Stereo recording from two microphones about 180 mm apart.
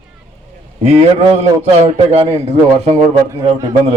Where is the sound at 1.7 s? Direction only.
35° right (ahead or behind).